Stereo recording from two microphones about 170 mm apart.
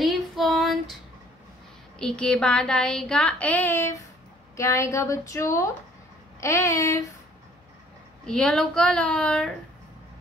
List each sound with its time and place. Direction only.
0.0 s female singing: centre (ahead or behind)
2.0 s speech: 5° left (ahead or behind)
6.4 s a sound: 15° left (ahead or behind)
8.3 s speech: 5° left (ahead or behind)